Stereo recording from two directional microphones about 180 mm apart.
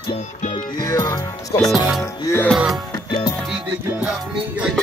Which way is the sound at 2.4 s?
Centre (ahead or behind).